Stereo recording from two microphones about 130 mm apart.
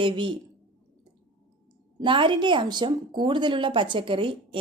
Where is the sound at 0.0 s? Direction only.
40° right (ahead or behind).